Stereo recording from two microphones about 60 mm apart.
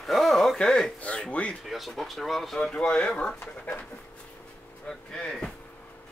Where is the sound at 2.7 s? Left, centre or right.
Centre.